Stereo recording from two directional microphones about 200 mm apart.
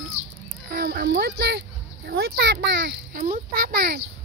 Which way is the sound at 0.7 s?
50° right (ahead or behind).